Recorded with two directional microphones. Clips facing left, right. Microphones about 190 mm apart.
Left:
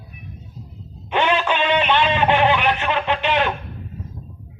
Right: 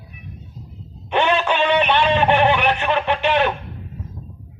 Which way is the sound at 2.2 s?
15° left (ahead or behind).